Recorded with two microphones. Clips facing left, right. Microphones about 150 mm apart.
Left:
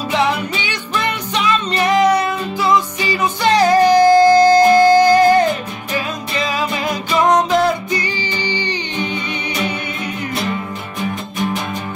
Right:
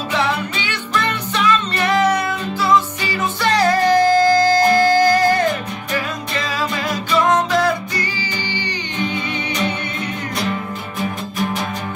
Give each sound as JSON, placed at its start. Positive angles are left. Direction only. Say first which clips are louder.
{"t": 0.6, "sound": "music", "louder": "even", "side_deg": 15}
{"t": 11.0, "sound": "music", "louder": "left 1 dB", "side_deg": 0}